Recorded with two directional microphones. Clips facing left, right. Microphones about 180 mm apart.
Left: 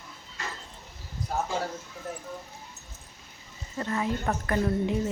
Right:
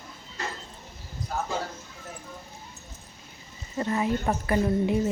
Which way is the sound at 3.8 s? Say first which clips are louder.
Right 3 dB; 15° right (ahead or behind).